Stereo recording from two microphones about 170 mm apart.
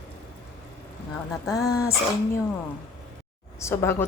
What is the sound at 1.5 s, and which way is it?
Speech, 20° left (ahead or behind).